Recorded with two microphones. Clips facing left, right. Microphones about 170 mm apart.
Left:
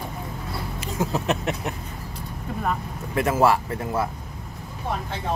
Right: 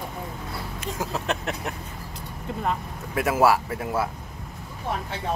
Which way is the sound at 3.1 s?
5° right (ahead or behind).